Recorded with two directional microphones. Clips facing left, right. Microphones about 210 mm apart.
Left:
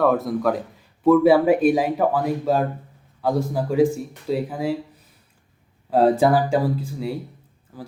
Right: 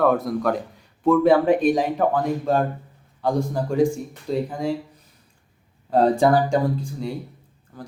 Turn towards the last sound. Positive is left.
turn(degrees=5)  # may be behind; listen again after turning